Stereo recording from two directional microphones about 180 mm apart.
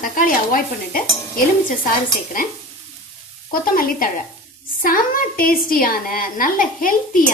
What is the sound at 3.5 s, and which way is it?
A woman's voice, 55° left (ahead or behind).